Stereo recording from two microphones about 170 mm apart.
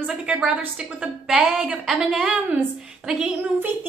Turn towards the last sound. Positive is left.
turn(degrees=-5)  # may be behind; listen again after turning